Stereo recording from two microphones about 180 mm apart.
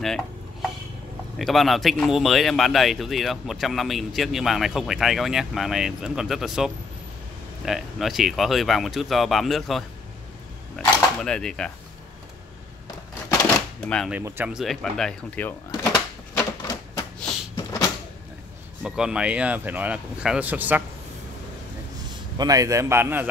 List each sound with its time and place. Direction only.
0.0 s stir: centre (ahead or behind)
1.4 s speech: centre (ahead or behind)
13.8 s speech: 5° left (ahead or behind)
14.1 s speech: 10° right (ahead or behind); by 15.9 s 10° left (ahead or behind)
15.9 s typewriter: 20° left (ahead or behind)
18.9 s speech: 5° right (ahead or behind)
22.4 s speech: 20° right (ahead or behind)